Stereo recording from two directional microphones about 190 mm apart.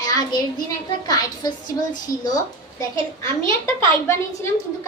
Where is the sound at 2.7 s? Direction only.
15° left (ahead or behind).